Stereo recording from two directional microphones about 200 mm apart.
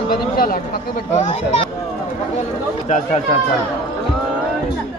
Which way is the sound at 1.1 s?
35° left (ahead or behind).